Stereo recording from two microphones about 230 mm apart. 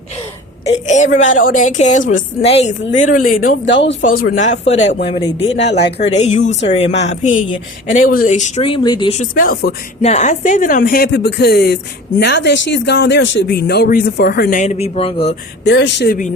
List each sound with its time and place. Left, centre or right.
0.9 s a woman's voice: left
4.0 s a woman's voice: left
10.0 s a woman's voice: left
15.6 s speech: left